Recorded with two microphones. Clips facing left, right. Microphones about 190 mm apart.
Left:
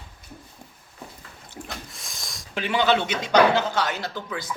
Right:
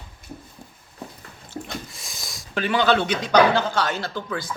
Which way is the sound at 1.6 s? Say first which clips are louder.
Right 3 dB; centre (ahead or behind).